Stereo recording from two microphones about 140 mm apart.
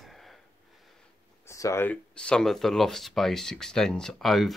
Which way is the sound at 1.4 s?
20° left (ahead or behind).